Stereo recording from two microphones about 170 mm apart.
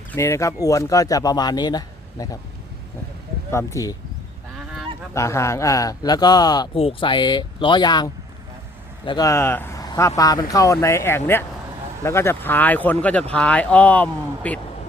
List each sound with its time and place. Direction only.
0.1 s speech: 15° left (ahead or behind)
3.5 s speech: 15° left (ahead or behind)
5.1 s speech: 15° left (ahead or behind)